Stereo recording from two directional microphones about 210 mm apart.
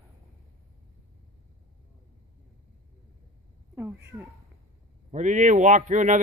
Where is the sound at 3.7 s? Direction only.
10° right (ahead or behind).